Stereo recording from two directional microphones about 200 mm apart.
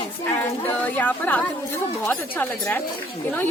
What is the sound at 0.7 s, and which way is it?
Speech, 10° left (ahead or behind).